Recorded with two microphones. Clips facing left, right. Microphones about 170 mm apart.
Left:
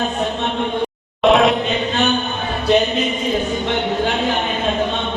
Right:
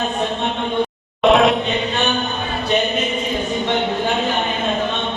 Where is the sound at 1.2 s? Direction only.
Centre (ahead or behind).